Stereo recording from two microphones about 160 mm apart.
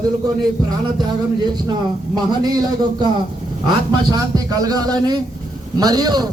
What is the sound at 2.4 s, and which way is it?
Speech, 25° right (ahead or behind).